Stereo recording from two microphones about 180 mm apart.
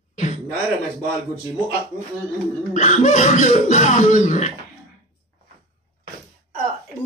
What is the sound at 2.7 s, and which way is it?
Speech, 40° left (ahead or behind).